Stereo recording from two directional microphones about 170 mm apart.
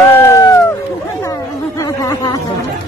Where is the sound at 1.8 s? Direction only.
20° left (ahead or behind).